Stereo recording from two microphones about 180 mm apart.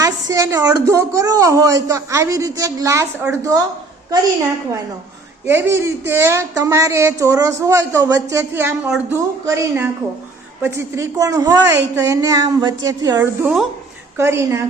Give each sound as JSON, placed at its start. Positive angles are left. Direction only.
{"t": 0.0, "sound": "a woman's voice", "side_deg": -20}
{"t": 5.5, "sound": "a woman's voice", "side_deg": -15}